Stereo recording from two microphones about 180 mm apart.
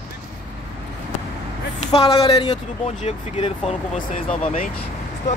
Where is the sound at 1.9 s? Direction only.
30° left (ahead or behind).